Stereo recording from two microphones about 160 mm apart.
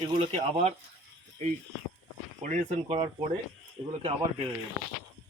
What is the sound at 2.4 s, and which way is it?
Speech, 45° right (ahead or behind).